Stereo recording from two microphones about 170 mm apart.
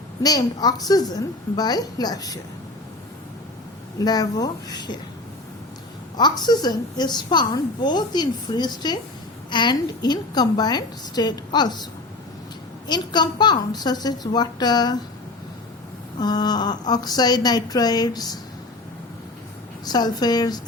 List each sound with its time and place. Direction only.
0.2 s a woman's voice: 20° left (ahead or behind)
4.0 s a woman's voice: 20° left (ahead or behind)
6.1 s a woman's voice: 25° left (ahead or behind)
12.9 s a woman's voice: 25° left (ahead or behind)
16.2 s a woman's voice: 25° left (ahead or behind)
19.8 s a woman's voice: 25° left (ahead or behind)